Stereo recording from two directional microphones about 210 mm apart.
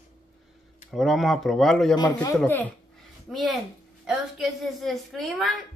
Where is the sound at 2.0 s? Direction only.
20° left (ahead or behind).